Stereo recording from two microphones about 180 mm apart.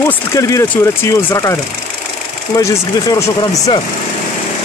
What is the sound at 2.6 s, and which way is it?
Speech, 20° left (ahead or behind).